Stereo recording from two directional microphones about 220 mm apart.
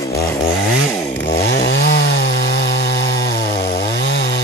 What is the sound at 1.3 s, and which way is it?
Chainsaw, 50° left (ahead or behind).